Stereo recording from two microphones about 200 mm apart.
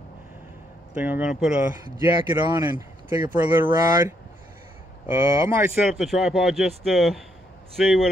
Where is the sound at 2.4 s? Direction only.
20° right (ahead or behind).